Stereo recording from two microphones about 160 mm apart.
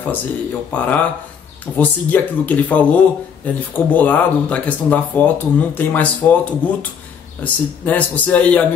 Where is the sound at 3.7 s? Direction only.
10° left (ahead or behind).